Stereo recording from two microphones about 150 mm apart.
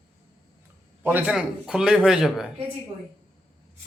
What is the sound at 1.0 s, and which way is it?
Speech, 15° right (ahead or behind).